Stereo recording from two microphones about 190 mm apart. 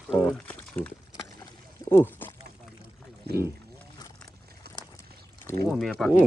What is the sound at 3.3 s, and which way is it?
Speech, 55° right (ahead or behind).